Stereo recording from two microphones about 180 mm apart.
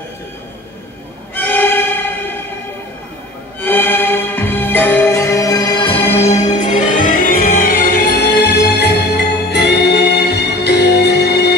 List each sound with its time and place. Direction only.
1.3 s violin: 10° left (ahead or behind)
3.6 s music: 10° left (ahead or behind)
6.1 s music: 40° left (ahead or behind); by 11.5 s 65° left (ahead or behind)